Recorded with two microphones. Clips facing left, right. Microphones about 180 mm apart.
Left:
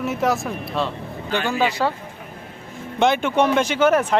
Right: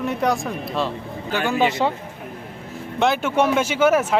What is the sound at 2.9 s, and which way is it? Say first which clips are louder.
Speech: left 1 dB; centre (ahead or behind).